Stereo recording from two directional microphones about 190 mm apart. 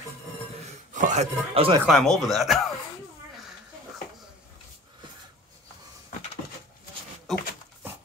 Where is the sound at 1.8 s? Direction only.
Centre (ahead or behind).